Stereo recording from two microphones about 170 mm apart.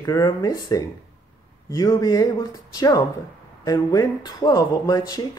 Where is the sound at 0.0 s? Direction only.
20° left (ahead or behind).